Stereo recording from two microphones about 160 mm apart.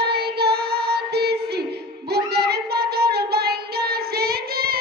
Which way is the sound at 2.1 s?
90° right.